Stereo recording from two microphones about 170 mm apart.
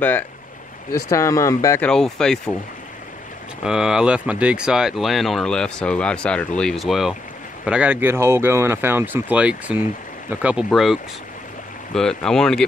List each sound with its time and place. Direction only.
0.9 s speech: 20° left (ahead or behind)
1.9 s speech: 5° left (ahead or behind)
3.6 s speech: 5° right (ahead or behind)